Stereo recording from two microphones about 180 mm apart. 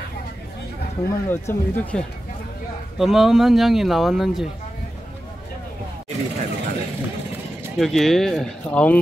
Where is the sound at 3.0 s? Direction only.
Centre (ahead or behind).